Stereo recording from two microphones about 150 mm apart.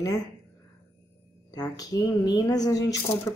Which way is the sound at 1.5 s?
25° left (ahead or behind).